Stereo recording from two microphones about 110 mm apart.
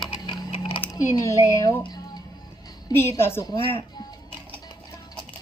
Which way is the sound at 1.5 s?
35° left (ahead or behind).